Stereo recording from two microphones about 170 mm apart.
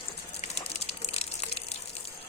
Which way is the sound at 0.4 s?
40° left (ahead or behind).